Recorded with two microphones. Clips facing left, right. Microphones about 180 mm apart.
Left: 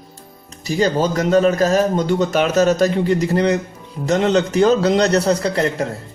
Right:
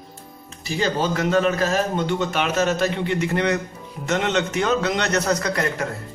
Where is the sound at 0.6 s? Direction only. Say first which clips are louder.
Left 5 dB; 40° left (ahead or behind).